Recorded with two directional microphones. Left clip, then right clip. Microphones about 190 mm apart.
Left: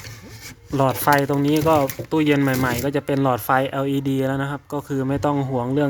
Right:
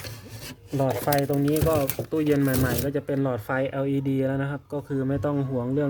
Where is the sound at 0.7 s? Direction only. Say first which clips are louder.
Left 7 dB; 15° left (ahead or behind).